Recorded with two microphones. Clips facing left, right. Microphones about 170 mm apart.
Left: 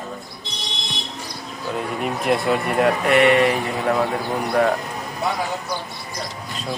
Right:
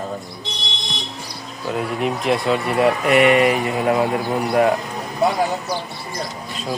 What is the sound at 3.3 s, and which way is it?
Speech, 15° right (ahead or behind).